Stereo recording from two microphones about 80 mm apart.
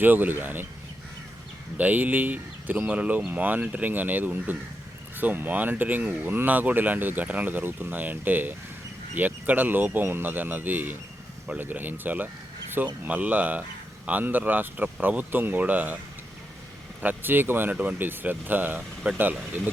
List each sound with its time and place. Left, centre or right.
0.0 s speech: right
1.8 s speech: right
17.0 s speech: right